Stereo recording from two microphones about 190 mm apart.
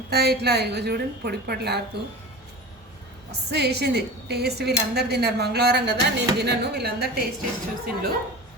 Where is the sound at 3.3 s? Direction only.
60° right (ahead or behind).